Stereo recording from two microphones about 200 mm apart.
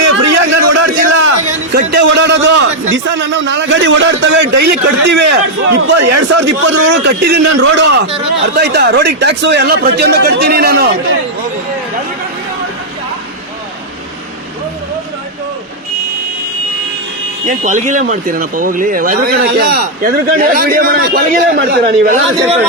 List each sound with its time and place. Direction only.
0.0 s a sound: 70° right (ahead or behind)
1.9 s a man's voice: 60° right (ahead or behind)
17.5 s speech: 40° right (ahead or behind)